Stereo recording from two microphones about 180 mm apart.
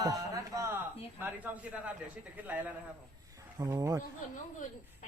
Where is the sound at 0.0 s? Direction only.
20° right (ahead or behind).